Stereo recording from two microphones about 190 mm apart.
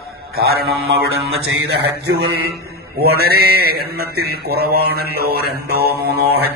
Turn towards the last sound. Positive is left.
turn(degrees=-55)  # may be behind; listen again after turning